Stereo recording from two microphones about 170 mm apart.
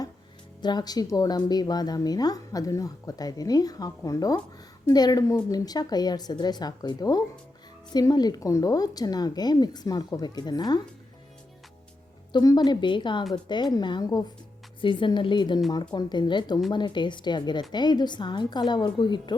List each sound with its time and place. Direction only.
0.6 s speech: 25° left (ahead or behind)
12.3 s speech: 25° left (ahead or behind)